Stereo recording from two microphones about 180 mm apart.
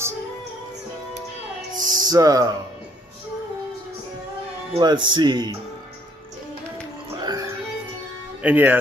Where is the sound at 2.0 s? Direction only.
20° right (ahead or behind).